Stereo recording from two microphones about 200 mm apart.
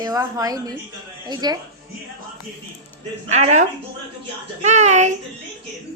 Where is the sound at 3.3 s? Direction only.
35° right (ahead or behind).